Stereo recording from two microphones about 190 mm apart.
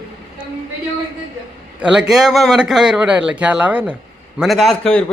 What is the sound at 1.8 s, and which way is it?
A man's voice, 5° right (ahead or behind).